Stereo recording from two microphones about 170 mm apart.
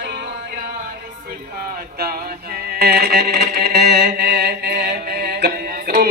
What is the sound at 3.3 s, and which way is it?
Chant, 70° right (ahead or behind).